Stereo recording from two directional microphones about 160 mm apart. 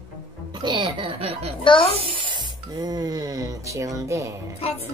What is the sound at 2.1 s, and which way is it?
Music, 30° right (ahead or behind).